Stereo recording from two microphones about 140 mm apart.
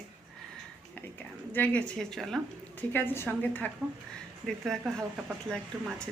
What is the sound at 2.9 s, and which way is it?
A woman's voice, 15° left (ahead or behind).